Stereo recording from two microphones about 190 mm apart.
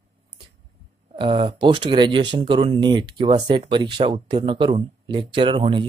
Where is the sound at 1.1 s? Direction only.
25° right (ahead or behind).